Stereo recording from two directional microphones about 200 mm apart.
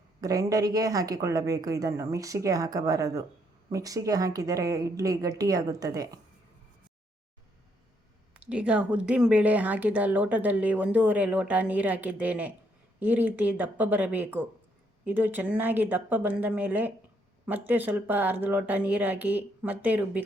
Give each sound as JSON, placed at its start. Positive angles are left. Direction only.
{"t": 0.2, "sound": "speech", "side_deg": -15}
{"t": 8.3, "sound": "speech", "side_deg": -5}